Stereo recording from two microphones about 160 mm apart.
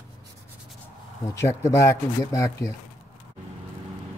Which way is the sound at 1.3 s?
20° left (ahead or behind).